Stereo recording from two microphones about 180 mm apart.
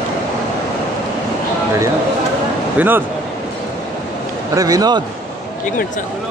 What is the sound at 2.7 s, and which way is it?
Speech, 10° right (ahead or behind).